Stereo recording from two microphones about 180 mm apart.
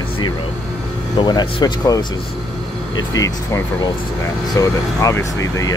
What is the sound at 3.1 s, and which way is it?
Speech, 15° left (ahead or behind).